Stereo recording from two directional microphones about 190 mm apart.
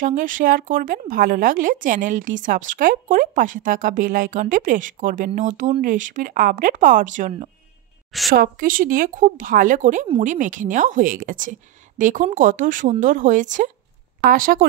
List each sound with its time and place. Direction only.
0.0 s speech: 45° right (ahead or behind)
8.3 s speech: 50° right (ahead or behind)